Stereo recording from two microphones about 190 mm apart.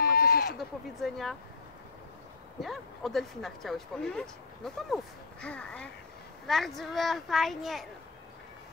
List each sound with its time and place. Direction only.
0.0 s a sound: 50° left (ahead or behind)
0.6 s speech: centre (ahead or behind)
2.6 s speech: centre (ahead or behind)